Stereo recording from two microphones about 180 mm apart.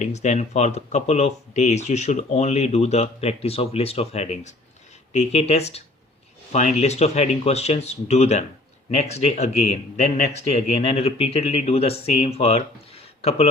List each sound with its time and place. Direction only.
0.0 s speech: 40° left (ahead or behind)